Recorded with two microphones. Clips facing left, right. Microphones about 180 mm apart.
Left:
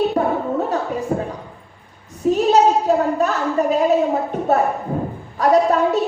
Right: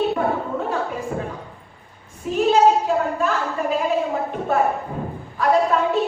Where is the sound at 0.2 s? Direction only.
40° left (ahead or behind).